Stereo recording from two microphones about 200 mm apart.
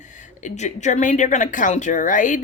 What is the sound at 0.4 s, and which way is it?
A woman's voice, 35° left (ahead or behind).